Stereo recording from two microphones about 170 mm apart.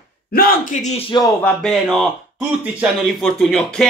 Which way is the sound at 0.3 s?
60° left (ahead or behind).